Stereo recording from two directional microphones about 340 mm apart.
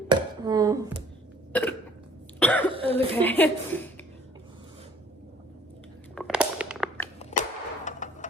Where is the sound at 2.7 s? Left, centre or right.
Centre.